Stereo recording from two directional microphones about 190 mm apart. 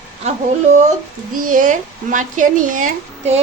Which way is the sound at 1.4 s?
45° right (ahead or behind).